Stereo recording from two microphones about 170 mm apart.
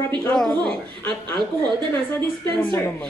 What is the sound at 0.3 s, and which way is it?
Speech, 5° left (ahead or behind).